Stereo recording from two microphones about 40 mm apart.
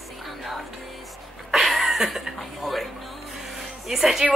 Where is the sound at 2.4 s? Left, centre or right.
Centre.